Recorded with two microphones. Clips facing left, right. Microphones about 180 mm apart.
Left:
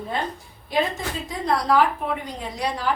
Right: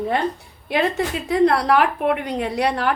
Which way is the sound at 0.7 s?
65° right (ahead or behind).